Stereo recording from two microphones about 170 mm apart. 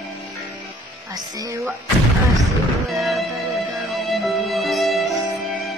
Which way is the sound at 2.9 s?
Centre (ahead or behind).